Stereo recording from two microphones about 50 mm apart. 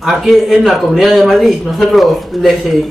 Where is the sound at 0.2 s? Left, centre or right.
Centre.